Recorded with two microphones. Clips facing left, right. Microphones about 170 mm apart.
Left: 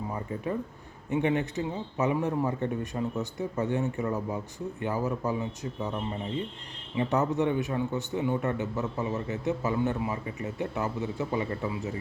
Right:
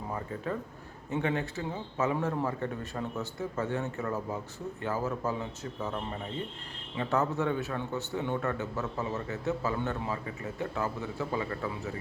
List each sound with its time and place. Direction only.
0.1 s a man's voice: 15° left (ahead or behind)